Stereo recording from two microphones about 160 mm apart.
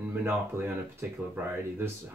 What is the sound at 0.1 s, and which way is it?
Speech, 10° right (ahead or behind).